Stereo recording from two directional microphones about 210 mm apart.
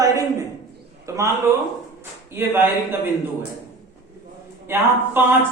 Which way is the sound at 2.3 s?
10° right (ahead or behind).